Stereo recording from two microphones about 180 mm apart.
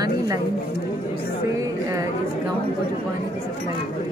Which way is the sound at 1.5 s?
20° right (ahead or behind).